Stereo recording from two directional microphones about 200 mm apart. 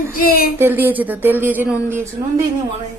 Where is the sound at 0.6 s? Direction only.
10° right (ahead or behind).